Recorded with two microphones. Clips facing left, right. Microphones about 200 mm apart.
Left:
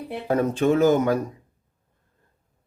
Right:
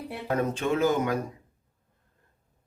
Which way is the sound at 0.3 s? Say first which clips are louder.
Left 6 dB; 40° left (ahead or behind).